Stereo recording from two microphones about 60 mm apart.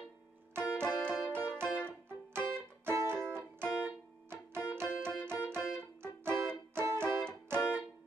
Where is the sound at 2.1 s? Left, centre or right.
Right.